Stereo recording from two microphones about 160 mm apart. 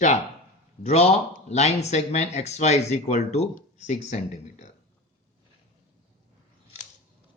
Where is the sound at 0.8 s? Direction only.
45° left (ahead or behind).